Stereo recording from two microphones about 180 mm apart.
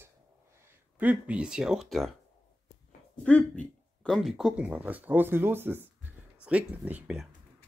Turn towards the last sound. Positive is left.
turn(degrees=-5)  # may be behind; listen again after turning